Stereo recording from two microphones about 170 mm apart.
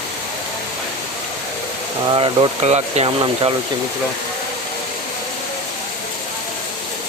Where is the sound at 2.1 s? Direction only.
30° right (ahead or behind).